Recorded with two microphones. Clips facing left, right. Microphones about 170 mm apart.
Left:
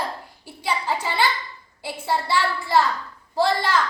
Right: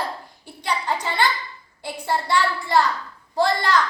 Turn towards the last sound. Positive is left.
turn(degrees=5)  # may be behind; listen again after turning